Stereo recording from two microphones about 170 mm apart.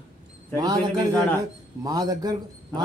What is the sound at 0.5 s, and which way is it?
A man's voice, 25° right (ahead or behind).